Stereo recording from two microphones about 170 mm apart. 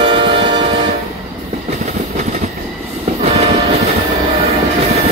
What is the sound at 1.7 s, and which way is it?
Train, 45° right (ahead or behind).